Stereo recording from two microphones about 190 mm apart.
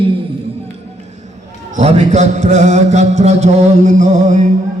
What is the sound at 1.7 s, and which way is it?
Mantra, 35° right (ahead or behind).